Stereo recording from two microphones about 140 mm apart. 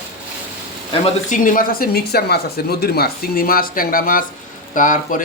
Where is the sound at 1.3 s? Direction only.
75° left (ahead or behind).